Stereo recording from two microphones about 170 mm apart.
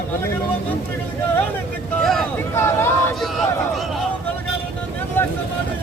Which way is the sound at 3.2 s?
Centre (ahead or behind).